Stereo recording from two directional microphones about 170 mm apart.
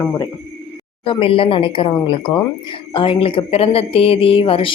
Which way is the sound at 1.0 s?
30° left (ahead or behind).